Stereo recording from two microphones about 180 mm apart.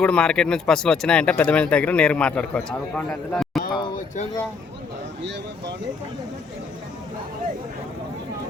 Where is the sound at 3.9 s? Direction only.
45° left (ahead or behind).